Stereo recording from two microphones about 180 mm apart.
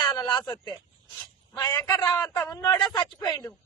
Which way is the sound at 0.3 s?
10° left (ahead or behind).